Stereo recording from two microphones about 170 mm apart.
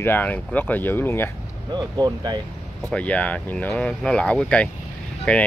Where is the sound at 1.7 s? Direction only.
25° right (ahead or behind).